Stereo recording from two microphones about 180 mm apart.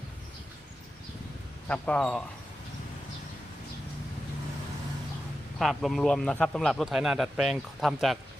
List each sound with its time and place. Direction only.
1.6 s speech: 5° left (ahead or behind)
5.5 s a man's voice: centre (ahead or behind)